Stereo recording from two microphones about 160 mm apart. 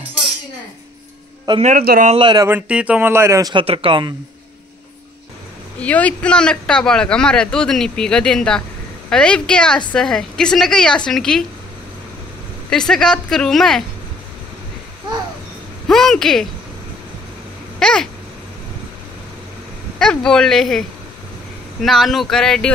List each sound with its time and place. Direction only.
1.8 s a man's voice: 70° right (ahead or behind)
2.0 s speech: 30° right (ahead or behind)
2.4 s speech: 10° right (ahead or behind)
3.5 s speech: 35° right (ahead or behind)
5.8 s a man's voice: 10° left (ahead or behind)
12.6 s a man's voice: 5° left (ahead or behind)
15.9 s a man's voice: centre (ahead or behind)
17.7 s babbling: 5° left (ahead or behind)
20.0 s a man's voice: 5° left (ahead or behind)
21.8 s a man's voice: centre (ahead or behind)